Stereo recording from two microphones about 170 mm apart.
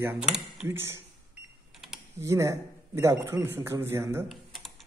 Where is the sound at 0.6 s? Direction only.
15° right (ahead or behind).